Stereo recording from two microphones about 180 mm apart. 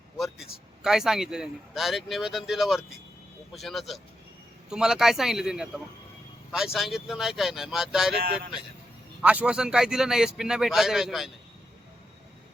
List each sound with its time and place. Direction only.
0.2 s speech: centre (ahead or behind)
9.2 s speech: 5° right (ahead or behind)